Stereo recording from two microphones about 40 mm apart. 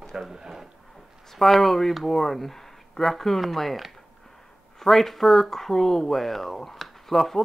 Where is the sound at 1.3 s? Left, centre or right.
Centre.